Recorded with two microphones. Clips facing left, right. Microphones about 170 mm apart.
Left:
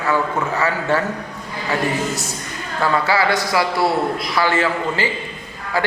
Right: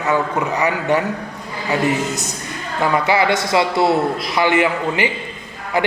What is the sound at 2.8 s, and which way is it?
A man's voice, 20° right (ahead or behind).